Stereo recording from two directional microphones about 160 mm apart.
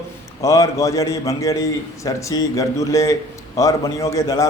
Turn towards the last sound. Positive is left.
turn(degrees=20)  # may be behind; listen again after turning